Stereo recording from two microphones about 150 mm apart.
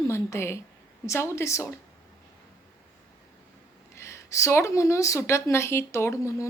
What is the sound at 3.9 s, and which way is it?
Speech, 20° left (ahead or behind).